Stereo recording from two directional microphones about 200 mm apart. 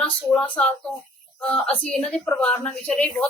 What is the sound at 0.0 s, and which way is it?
A woman's voice, 5° left (ahead or behind).